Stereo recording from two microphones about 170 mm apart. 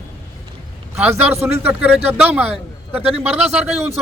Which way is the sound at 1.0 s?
15° right (ahead or behind).